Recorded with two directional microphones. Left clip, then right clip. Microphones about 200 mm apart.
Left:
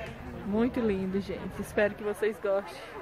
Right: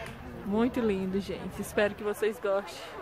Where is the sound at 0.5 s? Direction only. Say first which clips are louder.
Even; 5° right (ahead or behind).